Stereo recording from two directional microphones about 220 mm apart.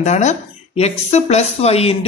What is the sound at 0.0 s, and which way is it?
Speech, 30° left (ahead or behind).